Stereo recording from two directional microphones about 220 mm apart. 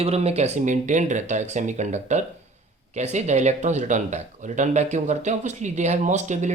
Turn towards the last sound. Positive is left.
turn(degrees=-35)  # may be behind; listen again after turning